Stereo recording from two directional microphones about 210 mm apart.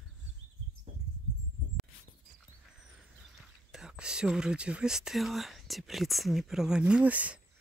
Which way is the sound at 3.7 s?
5° right (ahead or behind).